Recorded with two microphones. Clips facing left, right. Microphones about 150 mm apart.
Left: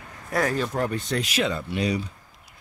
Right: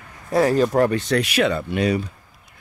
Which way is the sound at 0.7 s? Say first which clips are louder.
Right 8 dB; 80° right.